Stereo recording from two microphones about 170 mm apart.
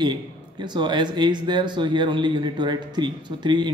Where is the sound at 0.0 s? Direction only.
25° right (ahead or behind).